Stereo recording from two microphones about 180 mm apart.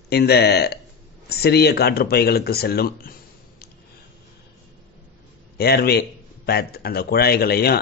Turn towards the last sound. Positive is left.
turn(degrees=60)  # may be behind; listen again after turning